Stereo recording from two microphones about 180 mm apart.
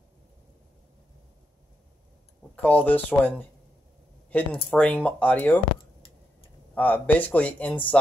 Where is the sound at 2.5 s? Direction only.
10° left (ahead or behind).